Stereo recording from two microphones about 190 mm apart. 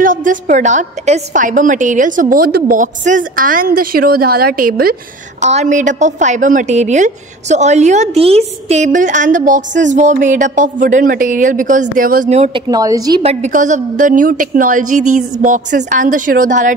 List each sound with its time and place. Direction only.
0.0 s a woman's voice: 45° right (ahead or behind)
5.4 s a woman's voice: 35° right (ahead or behind)
12.6 s a woman's voice: 20° right (ahead or behind)
13.2 s a woman's voice: 35° right (ahead or behind)